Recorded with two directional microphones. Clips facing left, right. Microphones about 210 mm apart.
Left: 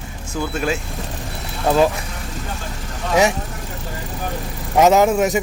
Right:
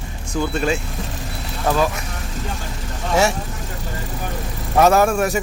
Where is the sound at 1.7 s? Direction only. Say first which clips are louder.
Left 3 dB; 20° left (ahead or behind).